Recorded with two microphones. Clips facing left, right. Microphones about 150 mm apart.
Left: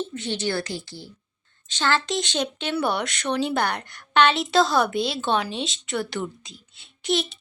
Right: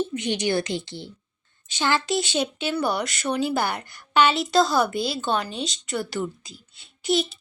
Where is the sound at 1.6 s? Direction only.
10° right (ahead or behind).